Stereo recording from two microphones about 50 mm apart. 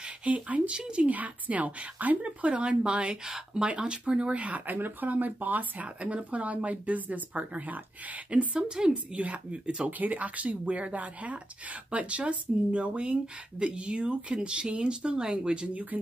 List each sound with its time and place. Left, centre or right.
0.0 s speech: right
0.7 s a woman's voice: centre
1.0 s speech: right
8.5 s a woman's voice: centre
8.9 s speech: right
9.8 s speech: right